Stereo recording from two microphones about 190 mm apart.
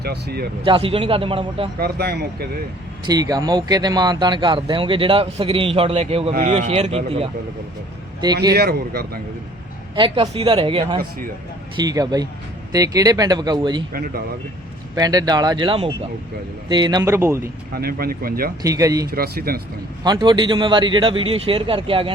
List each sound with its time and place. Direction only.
0.0 s speech: 55° right (ahead or behind)
0.6 s speech: 30° right (ahead or behind)
1.8 s speech: 55° right (ahead or behind)
3.1 s speech: 20° right (ahead or behind)
8.5 s speech: 55° right (ahead or behind)
9.9 s speech: 25° right (ahead or behind)
13.9 s speech: 50° right (ahead or behind)
14.9 s speech: 20° right (ahead or behind)
17.7 s speech: 55° right (ahead or behind)
18.6 s speech: 15° right (ahead or behind)
19.0 s speech: 55° right (ahead or behind)
20.1 s speech: 25° right (ahead or behind)